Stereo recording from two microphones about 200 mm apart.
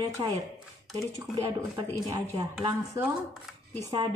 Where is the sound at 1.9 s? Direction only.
20° right (ahead or behind).